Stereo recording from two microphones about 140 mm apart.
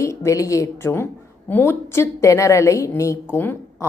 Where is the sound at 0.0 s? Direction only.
20° left (ahead or behind).